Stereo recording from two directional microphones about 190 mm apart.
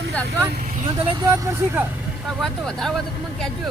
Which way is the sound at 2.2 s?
Centre (ahead or behind).